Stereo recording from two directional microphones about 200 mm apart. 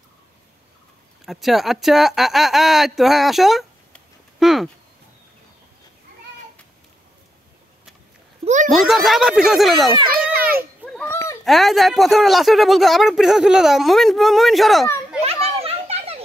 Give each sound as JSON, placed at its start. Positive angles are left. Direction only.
{"t": 1.2, "sound": "speech", "side_deg": 0}
{"t": 8.6, "sound": "speech", "side_deg": 0}
{"t": 10.3, "sound": "children playing", "side_deg": -50}
{"t": 10.9, "sound": "goat", "side_deg": 10}
{"t": 11.4, "sound": "speech", "side_deg": 0}
{"t": 15.4, "sound": "a sound", "side_deg": -30}